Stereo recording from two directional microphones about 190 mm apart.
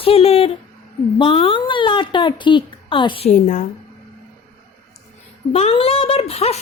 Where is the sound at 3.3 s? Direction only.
45° left (ahead or behind).